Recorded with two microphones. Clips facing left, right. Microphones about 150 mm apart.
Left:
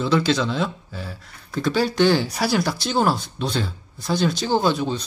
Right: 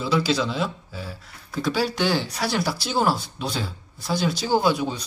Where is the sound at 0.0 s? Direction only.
5° right (ahead or behind).